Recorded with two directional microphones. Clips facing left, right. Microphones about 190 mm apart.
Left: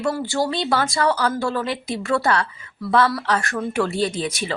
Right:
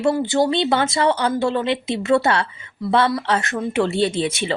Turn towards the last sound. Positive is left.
turn(degrees=-25)  # may be behind; listen again after turning